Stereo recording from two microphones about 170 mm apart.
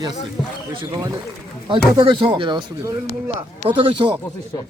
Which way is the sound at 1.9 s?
30° right (ahead or behind).